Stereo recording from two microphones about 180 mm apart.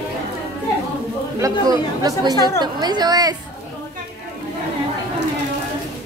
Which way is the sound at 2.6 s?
25° right (ahead or behind).